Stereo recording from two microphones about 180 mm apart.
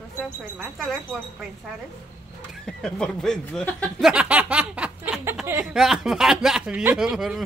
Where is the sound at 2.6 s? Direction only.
5° left (ahead or behind); by 5.6 s 15° right (ahead or behind).